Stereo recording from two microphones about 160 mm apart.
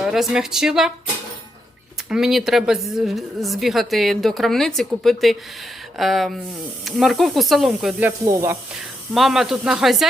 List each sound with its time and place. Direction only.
0.0 s a woman's voice: 5° right (ahead or behind)
2.0 s a woman's voice: 5° right (ahead or behind)
8.0 s speech: 15° right (ahead or behind)
9.1 s a woman's voice: centre (ahead or behind)